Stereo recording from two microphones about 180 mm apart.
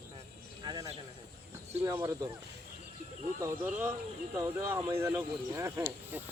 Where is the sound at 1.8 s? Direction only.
20° right (ahead or behind).